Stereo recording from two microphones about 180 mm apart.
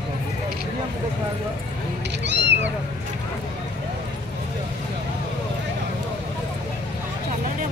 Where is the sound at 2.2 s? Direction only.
75° right (ahead or behind).